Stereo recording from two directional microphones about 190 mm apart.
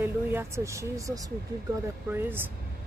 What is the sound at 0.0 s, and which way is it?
Speech, 15° right (ahead or behind).